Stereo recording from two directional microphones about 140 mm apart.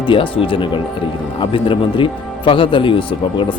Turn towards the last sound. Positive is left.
turn(degrees=35)  # may be behind; listen again after turning